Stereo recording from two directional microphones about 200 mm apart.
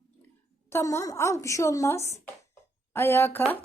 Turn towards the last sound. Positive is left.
turn(degrees=10)  # may be behind; listen again after turning